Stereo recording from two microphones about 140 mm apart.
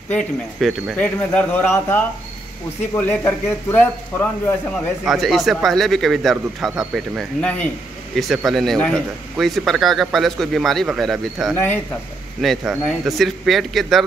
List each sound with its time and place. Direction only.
0.1 s a man's voice: 5° left (ahead or behind)
1.0 s a man's voice: 10° left (ahead or behind)
5.0 s a man's voice: centre (ahead or behind)
7.4 s a man's voice: 10° left (ahead or behind)
11.5 s a man's voice: 15° left (ahead or behind)
12.4 s a man's voice: centre (ahead or behind)